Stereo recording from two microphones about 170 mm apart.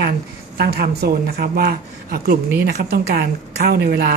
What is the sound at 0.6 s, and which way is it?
Speech, 65° right (ahead or behind).